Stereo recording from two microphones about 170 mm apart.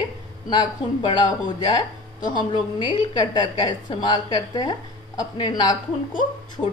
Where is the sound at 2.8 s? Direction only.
25° left (ahead or behind).